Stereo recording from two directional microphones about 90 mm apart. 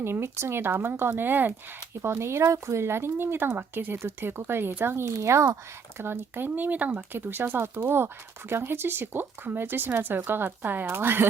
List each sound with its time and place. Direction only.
0.0 s speech: 30° right (ahead or behind)
6.0 s speech: 25° right (ahead or behind)